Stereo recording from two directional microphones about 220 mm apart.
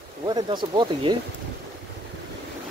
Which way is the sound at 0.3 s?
20° right (ahead or behind).